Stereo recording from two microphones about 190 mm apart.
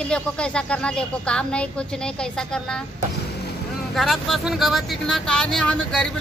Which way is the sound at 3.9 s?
Centre (ahead or behind).